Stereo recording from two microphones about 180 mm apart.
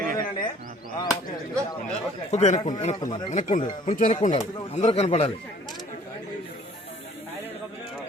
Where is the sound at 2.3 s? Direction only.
40° left (ahead or behind).